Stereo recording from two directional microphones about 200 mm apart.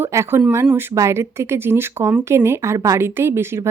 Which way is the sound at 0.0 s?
15° right (ahead or behind).